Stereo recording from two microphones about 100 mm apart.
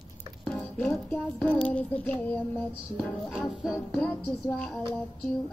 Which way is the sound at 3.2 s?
5° right (ahead or behind).